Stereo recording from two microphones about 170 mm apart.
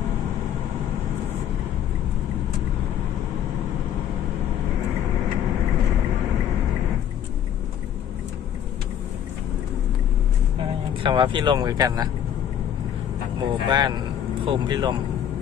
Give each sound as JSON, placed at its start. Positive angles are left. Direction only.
{"t": 11.0, "sound": "speech", "side_deg": -25}
{"t": 13.4, "sound": "speech", "side_deg": -25}